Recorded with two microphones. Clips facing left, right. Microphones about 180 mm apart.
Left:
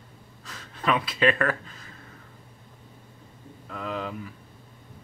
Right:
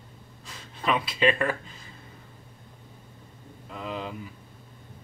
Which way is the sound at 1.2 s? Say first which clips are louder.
Left 1 dB; 15° right (ahead or behind).